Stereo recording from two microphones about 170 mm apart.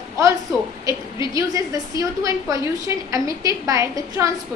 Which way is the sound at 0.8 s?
20° right (ahead or behind).